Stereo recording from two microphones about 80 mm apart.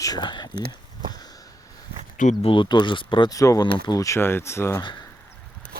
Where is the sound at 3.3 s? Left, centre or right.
Left.